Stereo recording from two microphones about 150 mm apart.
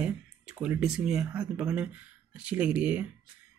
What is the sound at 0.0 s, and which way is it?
Speech, 10° right (ahead or behind).